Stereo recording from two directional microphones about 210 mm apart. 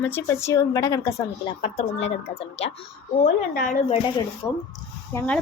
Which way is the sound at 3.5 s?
40° left (ahead or behind).